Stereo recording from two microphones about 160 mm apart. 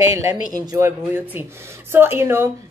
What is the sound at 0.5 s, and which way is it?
Speech, 20° right (ahead or behind).